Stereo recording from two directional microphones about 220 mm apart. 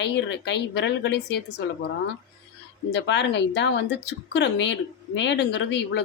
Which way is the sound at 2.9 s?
50° left (ahead or behind).